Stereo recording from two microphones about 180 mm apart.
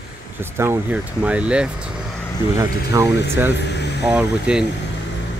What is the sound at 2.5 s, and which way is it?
Speech, 15° right (ahead or behind).